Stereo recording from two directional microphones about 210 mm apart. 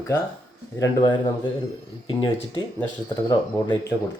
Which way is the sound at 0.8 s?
20° left (ahead or behind).